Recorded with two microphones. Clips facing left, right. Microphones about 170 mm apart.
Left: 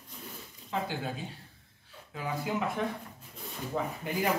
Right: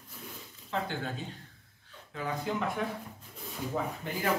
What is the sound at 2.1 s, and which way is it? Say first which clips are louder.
Speech: even; 5° left (ahead or behind).